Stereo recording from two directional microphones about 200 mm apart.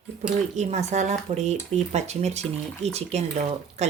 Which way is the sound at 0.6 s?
35° right (ahead or behind).